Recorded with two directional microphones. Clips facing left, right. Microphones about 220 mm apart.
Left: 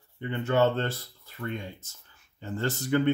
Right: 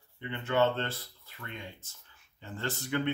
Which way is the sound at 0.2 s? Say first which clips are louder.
Left 4 dB; 40° left (ahead or behind).